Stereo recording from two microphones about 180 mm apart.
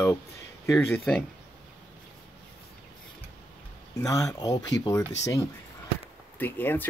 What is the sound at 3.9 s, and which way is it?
A man's voice, 20° left (ahead or behind).